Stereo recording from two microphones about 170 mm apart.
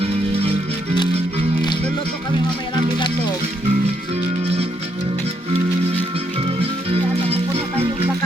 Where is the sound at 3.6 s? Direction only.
35° right (ahead or behind).